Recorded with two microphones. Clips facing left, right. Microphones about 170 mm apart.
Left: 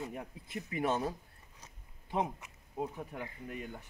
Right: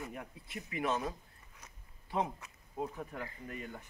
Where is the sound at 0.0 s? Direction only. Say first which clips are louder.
Left 3 dB; 25° left (ahead or behind).